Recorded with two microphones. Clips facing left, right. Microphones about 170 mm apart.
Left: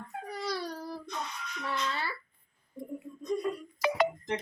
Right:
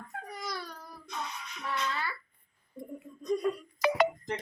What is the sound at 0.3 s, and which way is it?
Babbling, 30° left (ahead or behind).